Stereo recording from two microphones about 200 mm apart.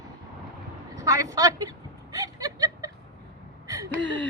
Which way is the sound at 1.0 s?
15° right (ahead or behind).